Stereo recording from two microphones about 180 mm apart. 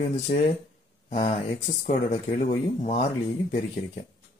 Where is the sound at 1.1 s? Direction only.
40° left (ahead or behind).